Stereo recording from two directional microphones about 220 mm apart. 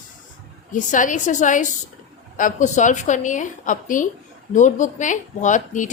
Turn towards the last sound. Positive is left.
turn(degrees=35)  # may be behind; listen again after turning